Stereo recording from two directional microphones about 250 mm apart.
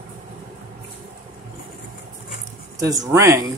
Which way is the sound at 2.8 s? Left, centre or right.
Centre.